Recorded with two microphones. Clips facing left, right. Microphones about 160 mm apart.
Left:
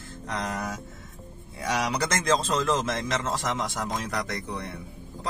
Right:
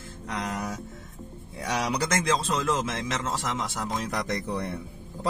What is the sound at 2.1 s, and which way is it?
A man's voice, 10° right (ahead or behind).